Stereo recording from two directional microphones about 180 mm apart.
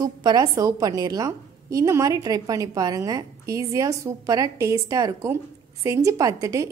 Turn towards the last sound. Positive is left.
turn(degrees=-15)  # may be behind; listen again after turning